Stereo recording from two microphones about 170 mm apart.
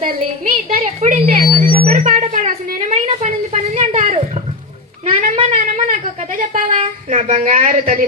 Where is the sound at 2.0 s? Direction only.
45° right (ahead or behind).